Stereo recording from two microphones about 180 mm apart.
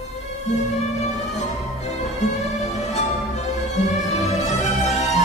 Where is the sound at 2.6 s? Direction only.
40° left (ahead or behind).